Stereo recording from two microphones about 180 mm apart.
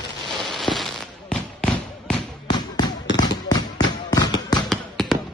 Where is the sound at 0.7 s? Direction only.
Centre (ahead or behind).